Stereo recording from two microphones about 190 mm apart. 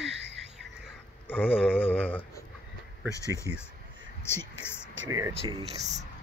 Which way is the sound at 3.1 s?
15° left (ahead or behind).